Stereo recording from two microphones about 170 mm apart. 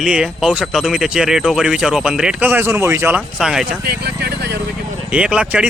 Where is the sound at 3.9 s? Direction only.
70° right (ahead or behind).